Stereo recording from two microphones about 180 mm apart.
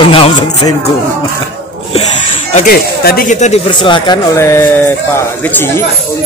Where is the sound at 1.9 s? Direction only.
40° left (ahead or behind).